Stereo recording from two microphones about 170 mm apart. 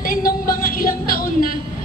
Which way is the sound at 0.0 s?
55° left (ahead or behind).